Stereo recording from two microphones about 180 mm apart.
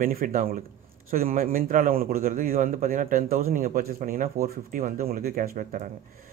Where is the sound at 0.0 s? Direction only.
50° right (ahead or behind).